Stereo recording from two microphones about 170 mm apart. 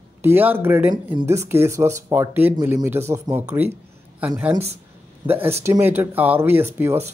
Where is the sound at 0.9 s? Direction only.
25° right (ahead or behind).